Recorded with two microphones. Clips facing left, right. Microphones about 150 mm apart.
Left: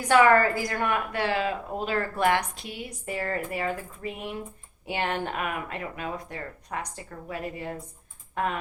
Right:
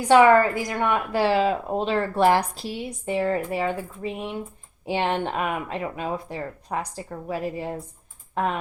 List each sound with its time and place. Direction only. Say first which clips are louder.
0.1 s a woman's voice: right 4 dB; 20° right (ahead or behind)